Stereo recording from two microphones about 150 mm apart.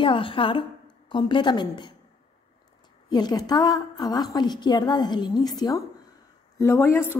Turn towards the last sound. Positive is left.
turn(degrees=15)  # may be behind; listen again after turning